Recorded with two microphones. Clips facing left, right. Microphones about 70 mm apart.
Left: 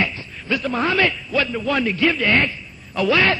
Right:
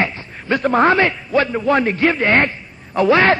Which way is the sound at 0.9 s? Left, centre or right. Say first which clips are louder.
Right 4 dB; right.